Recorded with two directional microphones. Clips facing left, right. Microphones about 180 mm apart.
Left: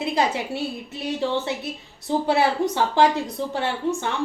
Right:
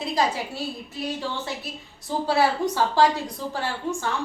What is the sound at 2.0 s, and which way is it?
Speech, 25° left (ahead or behind).